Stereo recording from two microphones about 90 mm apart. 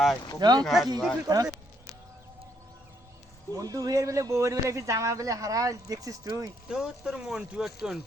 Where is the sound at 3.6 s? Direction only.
45° right (ahead or behind).